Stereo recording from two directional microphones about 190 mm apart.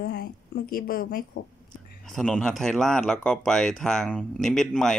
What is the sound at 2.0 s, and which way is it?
Speech, 5° left (ahead or behind).